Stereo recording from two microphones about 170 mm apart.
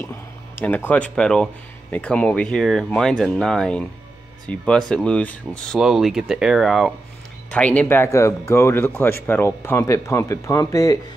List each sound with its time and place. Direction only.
0.6 s speech: 10° left (ahead or behind)